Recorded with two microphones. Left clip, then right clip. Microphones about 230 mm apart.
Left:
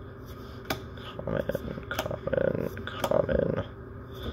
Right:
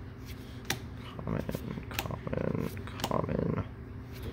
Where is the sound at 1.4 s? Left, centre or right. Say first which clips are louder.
Left 7 dB; right.